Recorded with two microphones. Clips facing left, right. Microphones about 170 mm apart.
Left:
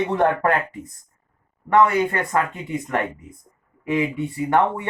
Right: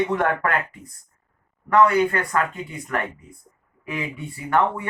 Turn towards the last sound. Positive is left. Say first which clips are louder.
# left 2 dB
turn(degrees=20)  # may be behind; listen again after turning